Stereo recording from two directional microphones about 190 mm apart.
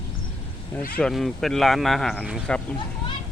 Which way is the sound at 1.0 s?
Centre (ahead or behind).